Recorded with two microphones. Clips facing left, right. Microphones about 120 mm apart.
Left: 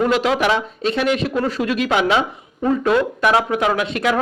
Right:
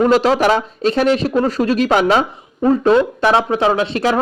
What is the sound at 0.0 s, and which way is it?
Speech, 35° right (ahead or behind).